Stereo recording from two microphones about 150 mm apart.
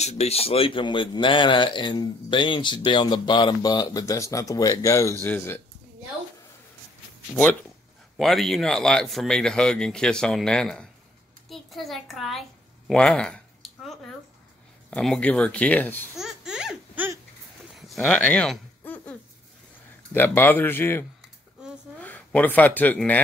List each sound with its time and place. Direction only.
0.0 s speech: 45° left (ahead or behind); by 5.6 s 15° left (ahead or behind)
8.2 s speech: centre (ahead or behind)
11.4 s a sound: centre (ahead or behind)
14.9 s speech: 5° left (ahead or behind)
16.2 s baby laughter: 5° right (ahead or behind)
17.7 s a sound: centre (ahead or behind)
20.1 s speech: 15° left (ahead or behind)
21.9 s a sound: 10° left (ahead or behind)
22.9 s speech: 10° left (ahead or behind)